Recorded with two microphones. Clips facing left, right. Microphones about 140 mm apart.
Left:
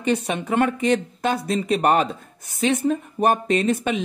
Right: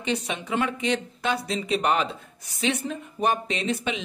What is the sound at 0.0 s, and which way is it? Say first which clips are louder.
Speech: left 6 dB; 50° left (ahead or behind).